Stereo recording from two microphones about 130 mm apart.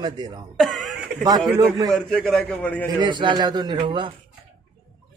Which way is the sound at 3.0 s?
35° right (ahead or behind).